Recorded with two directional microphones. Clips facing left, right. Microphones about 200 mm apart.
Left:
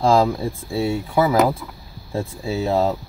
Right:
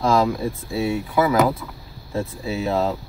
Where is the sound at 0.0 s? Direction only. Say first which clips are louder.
Left 2 dB; 30° left (ahead or behind).